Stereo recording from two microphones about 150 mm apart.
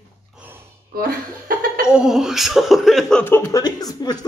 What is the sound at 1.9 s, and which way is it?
Speech, 5° right (ahead or behind).